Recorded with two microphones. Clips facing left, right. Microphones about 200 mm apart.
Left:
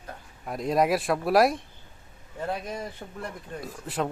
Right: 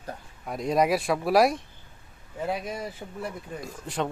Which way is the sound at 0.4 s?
Centre (ahead or behind).